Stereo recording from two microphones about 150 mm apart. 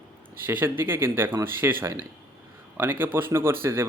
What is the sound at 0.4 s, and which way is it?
A man's voice, 15° right (ahead or behind).